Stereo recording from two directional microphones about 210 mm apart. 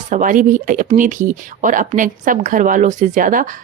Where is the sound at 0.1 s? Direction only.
40° right (ahead or behind).